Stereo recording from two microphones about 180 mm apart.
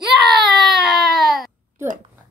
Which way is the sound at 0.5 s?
Centre (ahead or behind).